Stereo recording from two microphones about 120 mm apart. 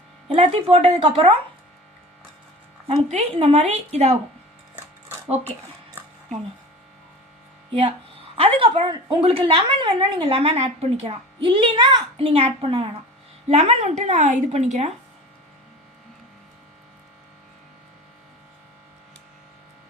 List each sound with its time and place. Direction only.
0.3 s a woman's voice: 50° right (ahead or behind)
3.3 s a woman's voice: 55° right (ahead or behind)
6.0 s a sound: 15° right (ahead or behind)
7.7 s a woman's voice: 45° right (ahead or behind)
10.2 s a woman's voice: 55° right (ahead or behind)
11.4 s a woman's voice: 45° right (ahead or behind)
13.5 s speech: 60° right (ahead or behind)